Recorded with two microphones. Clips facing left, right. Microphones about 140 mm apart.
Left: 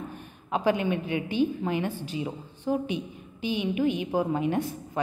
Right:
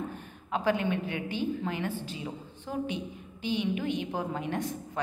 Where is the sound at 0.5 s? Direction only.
15° left (ahead or behind).